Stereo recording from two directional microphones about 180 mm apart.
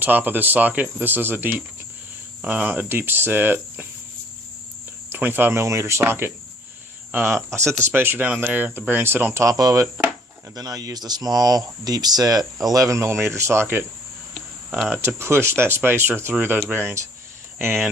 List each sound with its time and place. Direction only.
0.0 s speech: 10° right (ahead or behind)
5.1 s speech: 10° right (ahead or behind)
14.8 s speech: 15° right (ahead or behind)